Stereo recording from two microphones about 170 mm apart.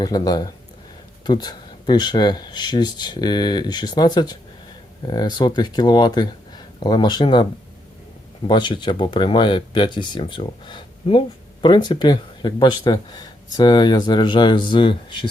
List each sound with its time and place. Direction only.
0.0 s speech: 25° left (ahead or behind)
8.4 s speech: 25° left (ahead or behind)